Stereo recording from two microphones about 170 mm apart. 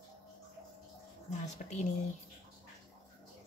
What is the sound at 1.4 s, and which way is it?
Speech, 45° left (ahead or behind).